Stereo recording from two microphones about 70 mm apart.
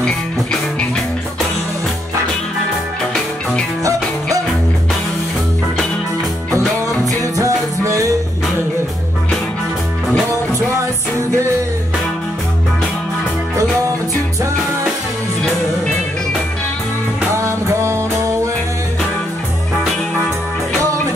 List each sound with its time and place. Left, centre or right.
0.0 s music: centre
7.1 s music: right
11.1 s music: right
17.4 s music: right